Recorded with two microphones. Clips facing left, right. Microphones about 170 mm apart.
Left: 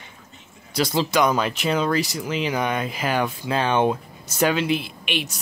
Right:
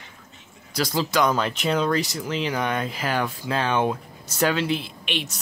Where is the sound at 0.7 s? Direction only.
25° left (ahead or behind).